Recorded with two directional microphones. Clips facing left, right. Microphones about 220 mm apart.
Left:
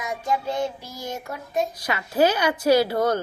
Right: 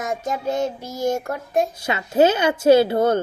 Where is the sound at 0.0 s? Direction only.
45° right (ahead or behind).